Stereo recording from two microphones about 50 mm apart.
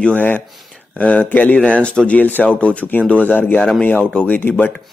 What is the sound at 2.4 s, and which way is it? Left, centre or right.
Speech, left.